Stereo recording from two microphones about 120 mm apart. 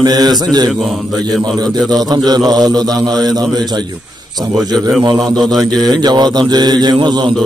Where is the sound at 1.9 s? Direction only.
35° right (ahead or behind).